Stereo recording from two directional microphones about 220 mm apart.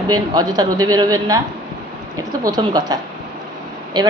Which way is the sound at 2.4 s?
20° right (ahead or behind).